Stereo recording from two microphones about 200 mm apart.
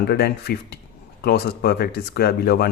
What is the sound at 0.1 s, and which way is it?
Speech, 50° left (ahead or behind).